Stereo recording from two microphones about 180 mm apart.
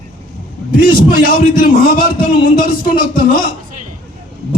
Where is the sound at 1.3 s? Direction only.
50° left (ahead or behind).